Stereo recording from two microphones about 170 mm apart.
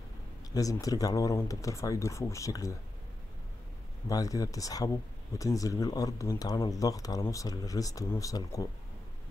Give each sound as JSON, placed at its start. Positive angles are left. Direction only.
{"t": 0.6, "sound": "speech", "side_deg": 20}
{"t": 4.1, "sound": "speech", "side_deg": 20}